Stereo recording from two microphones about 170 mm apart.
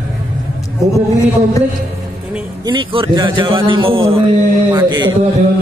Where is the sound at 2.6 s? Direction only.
30° right (ahead or behind).